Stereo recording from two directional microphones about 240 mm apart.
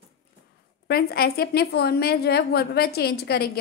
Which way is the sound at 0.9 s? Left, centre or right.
Left.